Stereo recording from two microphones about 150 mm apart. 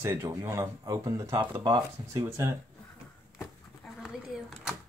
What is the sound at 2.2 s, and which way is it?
Speech, 20° right (ahead or behind).